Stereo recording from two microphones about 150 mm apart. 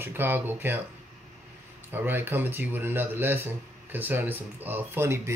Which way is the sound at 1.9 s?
15° right (ahead or behind).